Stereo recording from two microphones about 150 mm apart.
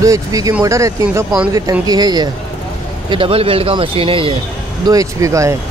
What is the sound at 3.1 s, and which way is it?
Speech, 40° right (ahead or behind).